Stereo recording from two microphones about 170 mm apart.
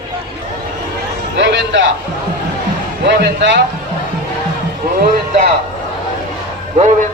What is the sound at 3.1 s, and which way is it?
Speech, 90° right.